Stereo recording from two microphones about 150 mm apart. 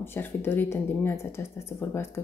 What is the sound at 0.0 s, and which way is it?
A woman's voice, 15° left (ahead or behind).